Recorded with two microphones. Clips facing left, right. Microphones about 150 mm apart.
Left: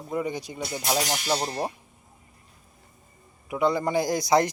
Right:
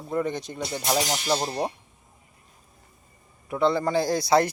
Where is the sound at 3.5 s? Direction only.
15° left (ahead or behind).